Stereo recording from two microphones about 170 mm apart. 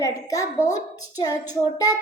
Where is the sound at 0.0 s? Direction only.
20° left (ahead or behind).